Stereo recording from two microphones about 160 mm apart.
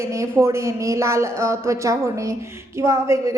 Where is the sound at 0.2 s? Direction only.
20° right (ahead or behind).